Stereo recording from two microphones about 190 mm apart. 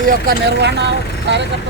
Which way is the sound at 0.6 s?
65° right (ahead or behind).